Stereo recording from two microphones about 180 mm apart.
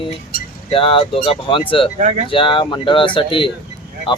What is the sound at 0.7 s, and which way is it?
Speech, 30° left (ahead or behind).